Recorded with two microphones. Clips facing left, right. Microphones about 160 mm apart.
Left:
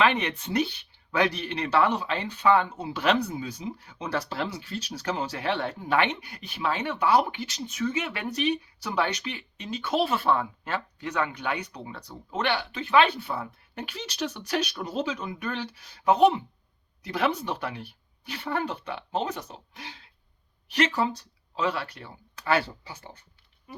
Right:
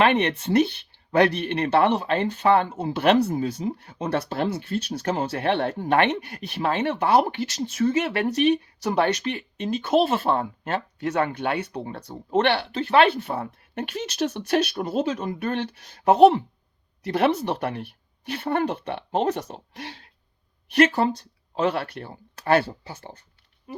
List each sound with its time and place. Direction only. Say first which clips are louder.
0.0 s speech: right 4 dB; 55° right (ahead or behind)
12.7 s speech: right 2 dB; 65° right (ahead or behind); by 23.2 s 45° right (ahead or behind)